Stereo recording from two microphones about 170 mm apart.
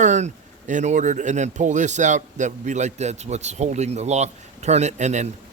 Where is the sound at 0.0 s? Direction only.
45° right (ahead or behind).